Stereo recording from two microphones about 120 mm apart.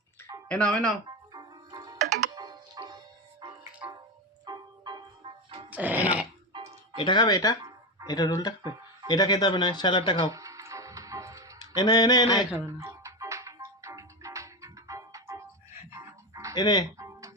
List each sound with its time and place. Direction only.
0.5 s speech: 10° left (ahead or behind)
1.3 s music: 35° right (ahead or behind)
5.7 s music: 15° right (ahead or behind)
6.9 s a sound: 45° left (ahead or behind)
10.2 s music: 25° right (ahead or behind)
11.6 s a sound: 35° left (ahead or behind)
12.5 s music: 25° right (ahead or behind)
16.6 s a sound: 35° left (ahead or behind)
17.0 s music: 25° right (ahead or behind)